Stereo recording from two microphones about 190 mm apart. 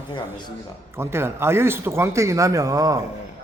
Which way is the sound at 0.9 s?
15° right (ahead or behind).